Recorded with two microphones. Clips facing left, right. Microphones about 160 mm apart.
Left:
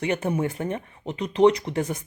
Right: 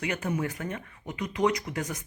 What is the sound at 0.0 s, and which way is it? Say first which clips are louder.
Speech: left 5 dB; 25° left (ahead or behind).